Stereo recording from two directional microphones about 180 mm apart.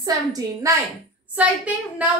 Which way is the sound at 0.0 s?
20° right (ahead or behind).